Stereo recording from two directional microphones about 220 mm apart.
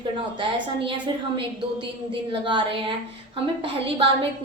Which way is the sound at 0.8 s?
20° right (ahead or behind).